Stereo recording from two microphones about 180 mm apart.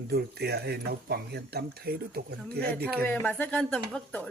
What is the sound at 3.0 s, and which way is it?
Speech, 10° left (ahead or behind).